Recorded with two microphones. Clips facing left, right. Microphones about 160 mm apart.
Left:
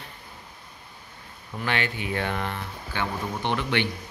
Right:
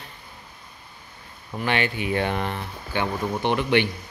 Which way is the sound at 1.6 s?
20° right (ahead or behind).